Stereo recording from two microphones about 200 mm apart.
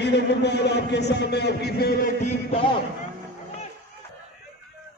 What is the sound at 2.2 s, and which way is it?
Speech, 30° left (ahead or behind).